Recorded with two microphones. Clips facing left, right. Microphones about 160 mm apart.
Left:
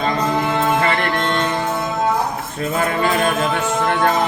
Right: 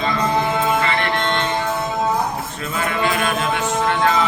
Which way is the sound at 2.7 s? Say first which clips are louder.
Left 2 dB; 40° left (ahead or behind).